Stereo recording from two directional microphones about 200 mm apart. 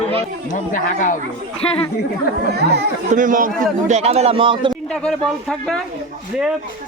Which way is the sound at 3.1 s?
40° right (ahead or behind).